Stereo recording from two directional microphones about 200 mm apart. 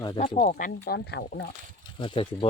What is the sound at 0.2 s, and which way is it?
Speech, 40° left (ahead or behind).